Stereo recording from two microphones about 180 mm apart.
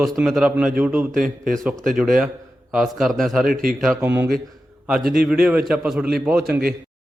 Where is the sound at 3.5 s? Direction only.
50° right (ahead or behind).